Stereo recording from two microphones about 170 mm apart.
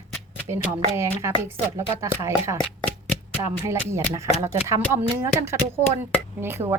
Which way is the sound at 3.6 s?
15° right (ahead or behind).